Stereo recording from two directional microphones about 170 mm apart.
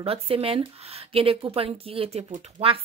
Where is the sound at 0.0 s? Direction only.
35° right (ahead or behind).